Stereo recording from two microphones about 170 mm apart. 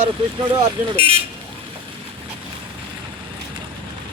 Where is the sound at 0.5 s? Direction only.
35° right (ahead or behind).